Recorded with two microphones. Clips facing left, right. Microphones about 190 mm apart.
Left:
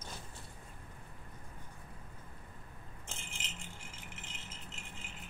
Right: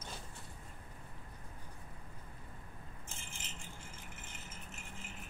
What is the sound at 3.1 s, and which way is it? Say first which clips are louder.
Rattle: left 4 dB; 70° left (ahead or behind).